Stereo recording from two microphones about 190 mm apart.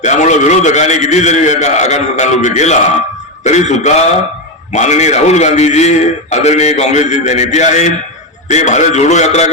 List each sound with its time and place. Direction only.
0.0 s a man's voice: 40° left (ahead or behind)